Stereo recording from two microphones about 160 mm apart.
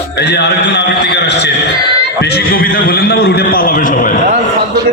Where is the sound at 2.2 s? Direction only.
80° left; by 4.2 s 60° left (ahead or behind).